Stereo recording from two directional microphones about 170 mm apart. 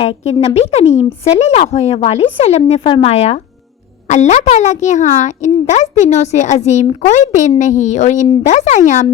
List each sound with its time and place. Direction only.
0.4 s a child's voice: 40° left (ahead or behind)